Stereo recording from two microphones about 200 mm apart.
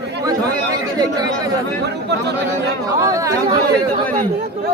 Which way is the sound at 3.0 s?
15° right (ahead or behind).